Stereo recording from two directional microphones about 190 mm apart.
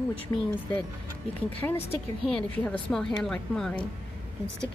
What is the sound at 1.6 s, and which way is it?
A woman's voice, 10° left (ahead or behind).